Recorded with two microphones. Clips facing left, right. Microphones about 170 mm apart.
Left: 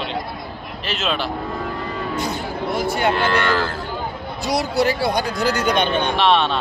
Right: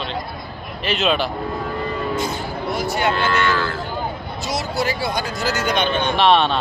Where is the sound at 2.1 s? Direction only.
60° left (ahead or behind).